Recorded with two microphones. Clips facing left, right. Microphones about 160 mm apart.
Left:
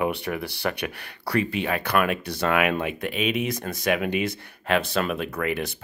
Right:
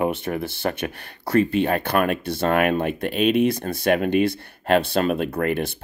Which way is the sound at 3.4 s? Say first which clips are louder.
Right 7 dB; 30° right (ahead or behind).